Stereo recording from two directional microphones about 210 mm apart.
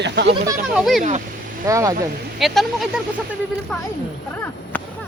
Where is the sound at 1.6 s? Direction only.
15° right (ahead or behind).